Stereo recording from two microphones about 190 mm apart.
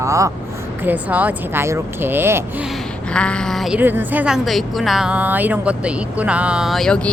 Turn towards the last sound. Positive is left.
turn(degrees=5)  # may be behind; listen again after turning